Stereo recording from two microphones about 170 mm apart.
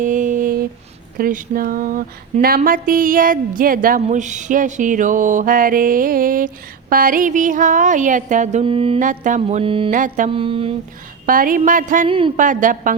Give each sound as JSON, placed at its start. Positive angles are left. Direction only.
{"t": 0.0, "sound": "a sound", "side_deg": -50}
{"t": 1.2, "sound": "mantra", "side_deg": -55}
{"t": 2.6, "sound": "a woman's voice", "side_deg": -55}
{"t": 4.0, "sound": "mantra", "side_deg": -45}
{"t": 8.6, "sound": "music", "side_deg": -35}
{"t": 9.0, "sound": "music", "side_deg": -50}
{"t": 9.9, "sound": "mantra", "side_deg": -50}
{"t": 10.2, "sound": "music", "side_deg": -30}
{"t": 11.3, "sound": "mantra", "side_deg": -55}
{"t": 12.0, "sound": "music", "side_deg": -30}
{"t": 12.4, "sound": "mantra", "side_deg": -50}